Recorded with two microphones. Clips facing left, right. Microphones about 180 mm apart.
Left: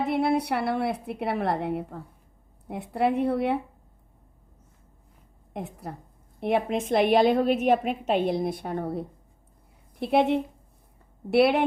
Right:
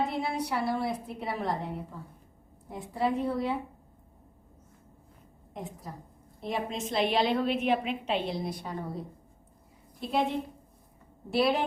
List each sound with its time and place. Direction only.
0.0 s a woman's voice: 65° left (ahead or behind)
5.5 s a woman's voice: 65° left (ahead or behind)